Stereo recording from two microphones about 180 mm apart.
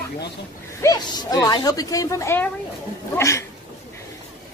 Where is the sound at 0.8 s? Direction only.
20° left (ahead or behind).